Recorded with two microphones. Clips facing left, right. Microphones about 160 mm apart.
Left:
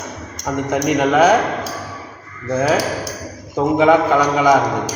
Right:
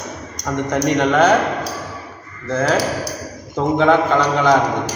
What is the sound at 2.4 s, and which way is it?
A man's voice, 10° left (ahead or behind).